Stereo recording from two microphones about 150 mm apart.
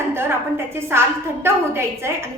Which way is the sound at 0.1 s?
15° right (ahead or behind).